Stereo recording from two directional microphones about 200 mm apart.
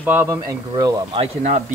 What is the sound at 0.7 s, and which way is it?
Speech, 25° right (ahead or behind).